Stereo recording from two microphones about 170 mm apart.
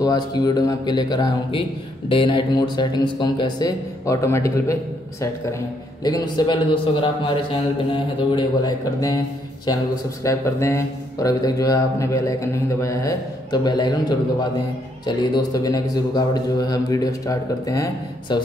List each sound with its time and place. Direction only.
0.0 s speech: 25° left (ahead or behind)
6.0 s speech: 25° left (ahead or behind)
10.2 s speech: 15° left (ahead or behind)